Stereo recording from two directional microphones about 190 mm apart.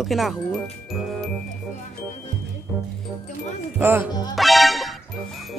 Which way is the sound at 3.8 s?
10° right (ahead or behind).